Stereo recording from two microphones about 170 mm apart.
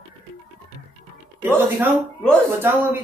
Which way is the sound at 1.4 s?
10° right (ahead or behind).